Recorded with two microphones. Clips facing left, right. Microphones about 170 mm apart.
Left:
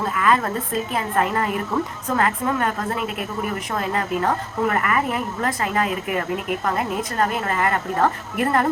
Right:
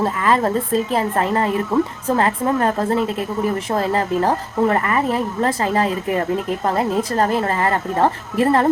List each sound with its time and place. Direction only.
0.0 s a woman's voice: 30° right (ahead or behind)